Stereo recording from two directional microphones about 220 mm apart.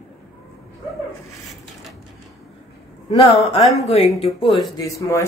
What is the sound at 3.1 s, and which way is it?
A man's voice, 30° left (ahead or behind).